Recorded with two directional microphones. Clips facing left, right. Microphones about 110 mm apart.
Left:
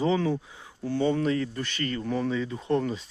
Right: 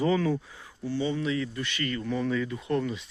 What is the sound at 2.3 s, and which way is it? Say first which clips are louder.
Speech: even; 20° left (ahead or behind).